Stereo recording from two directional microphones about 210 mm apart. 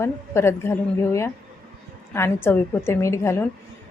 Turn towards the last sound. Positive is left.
turn(degrees=15)  # may be behind; listen again after turning